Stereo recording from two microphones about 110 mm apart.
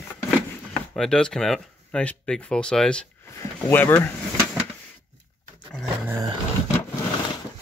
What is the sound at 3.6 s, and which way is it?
Speech, 20° left (ahead or behind).